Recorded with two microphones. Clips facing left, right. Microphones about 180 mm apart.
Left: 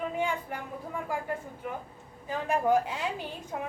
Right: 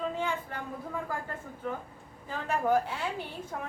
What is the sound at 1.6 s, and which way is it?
Speech, 15° left (ahead or behind).